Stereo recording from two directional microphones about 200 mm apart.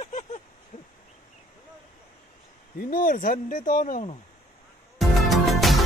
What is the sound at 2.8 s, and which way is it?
Speech, 45° left (ahead or behind).